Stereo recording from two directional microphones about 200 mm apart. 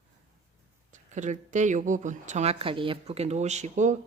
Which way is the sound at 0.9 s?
35° right (ahead or behind).